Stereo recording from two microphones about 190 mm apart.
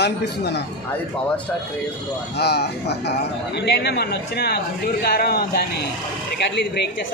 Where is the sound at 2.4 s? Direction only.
60° left (ahead or behind).